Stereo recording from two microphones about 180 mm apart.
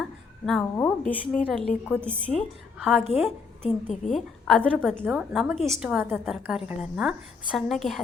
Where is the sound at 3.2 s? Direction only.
10° right (ahead or behind).